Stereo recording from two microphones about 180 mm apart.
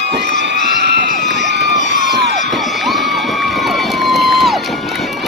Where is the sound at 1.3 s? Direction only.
70° right (ahead or behind).